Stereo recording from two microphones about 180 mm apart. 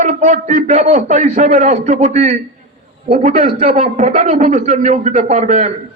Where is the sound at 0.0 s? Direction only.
45° right (ahead or behind).